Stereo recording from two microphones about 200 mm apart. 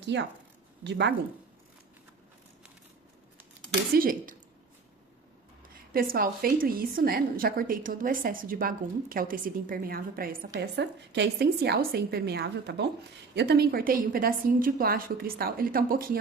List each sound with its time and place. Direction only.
0.0 s speech: 60° right (ahead or behind)
3.9 s a woman's voice: 45° right (ahead or behind)
5.9 s a woman's voice: 45° right (ahead or behind)
10.8 s a woman's voice: 60° right (ahead or behind)